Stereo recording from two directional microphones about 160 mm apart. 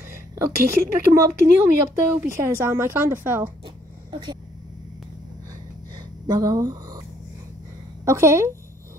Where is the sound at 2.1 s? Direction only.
15° right (ahead or behind).